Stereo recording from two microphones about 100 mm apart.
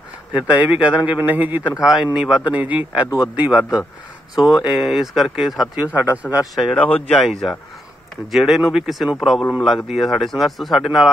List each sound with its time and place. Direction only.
0.3 s speech: 15° right (ahead or behind)
1.8 s a man's voice: 5° right (ahead or behind)
5.9 s speech: 15° right (ahead or behind)
6.5 s a man's voice: centre (ahead or behind)